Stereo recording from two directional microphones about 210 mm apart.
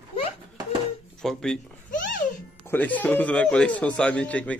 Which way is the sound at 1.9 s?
40° left (ahead or behind).